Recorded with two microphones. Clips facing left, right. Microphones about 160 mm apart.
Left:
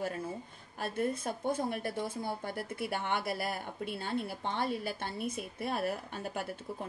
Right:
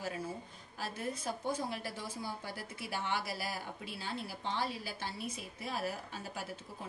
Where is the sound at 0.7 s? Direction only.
55° left (ahead or behind).